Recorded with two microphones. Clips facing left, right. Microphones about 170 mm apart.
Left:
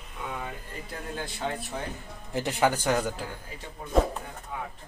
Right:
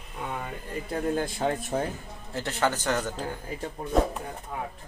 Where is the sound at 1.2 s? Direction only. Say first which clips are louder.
Right 5 dB; 45° right (ahead or behind).